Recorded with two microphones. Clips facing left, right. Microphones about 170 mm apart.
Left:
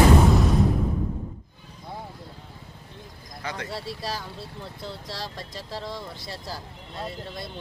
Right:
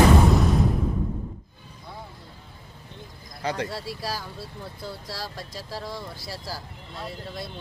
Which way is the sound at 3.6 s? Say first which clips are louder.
Even; centre (ahead or behind).